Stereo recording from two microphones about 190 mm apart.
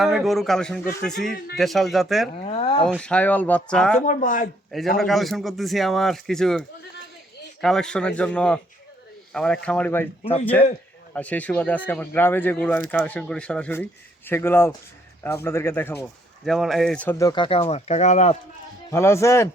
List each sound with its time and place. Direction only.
0.0 s speech: centre (ahead or behind)
2.3 s speech: 35° left (ahead or behind)
2.8 s speech: 5° left (ahead or behind)
4.0 s speech: 45° left (ahead or behind)
4.9 s speech: centre (ahead or behind)
16.5 s speech: centre (ahead or behind); by 18.3 s 35° left (ahead or behind)
18.9 s speech: 15° left (ahead or behind)